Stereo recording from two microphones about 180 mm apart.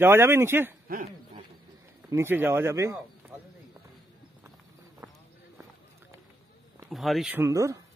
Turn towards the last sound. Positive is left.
turn(degrees=-20)  # may be behind; listen again after turning